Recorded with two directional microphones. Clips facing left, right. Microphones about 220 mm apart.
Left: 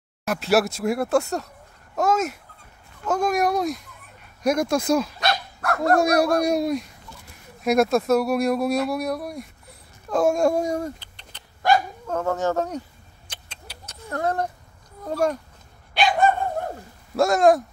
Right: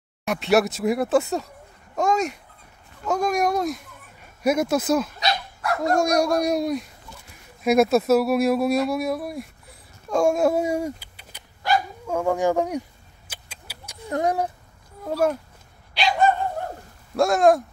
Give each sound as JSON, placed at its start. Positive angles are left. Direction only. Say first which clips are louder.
{"t": 0.2, "sound": "speech", "louder": "right 1 dB", "side_deg": 0}
{"t": 5.2, "sound": "dog", "louder": "left 1 dB", "side_deg": 55}
{"t": 5.9, "sound": "speech", "louder": "left 1 dB", "side_deg": 5}
{"t": 13.3, "sound": "a sound", "louder": "left 1 dB", "side_deg": -10}
{"t": 15.0, "sound": "speech", "louder": "right 1 dB", "side_deg": -5}
{"t": 15.9, "sound": "dog", "louder": "left 1 dB", "side_deg": 50}
{"t": 17.1, "sound": "speech", "louder": "even", "side_deg": 0}